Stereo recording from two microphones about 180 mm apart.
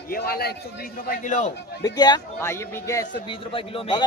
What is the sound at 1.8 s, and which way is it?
A man's voice, 25° left (ahead or behind).